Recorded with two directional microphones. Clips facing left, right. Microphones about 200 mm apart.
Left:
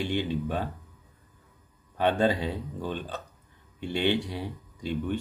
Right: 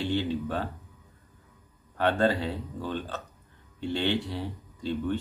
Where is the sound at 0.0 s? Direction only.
15° left (ahead or behind).